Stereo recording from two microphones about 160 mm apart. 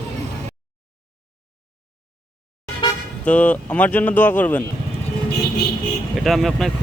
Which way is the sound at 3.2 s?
10° left (ahead or behind).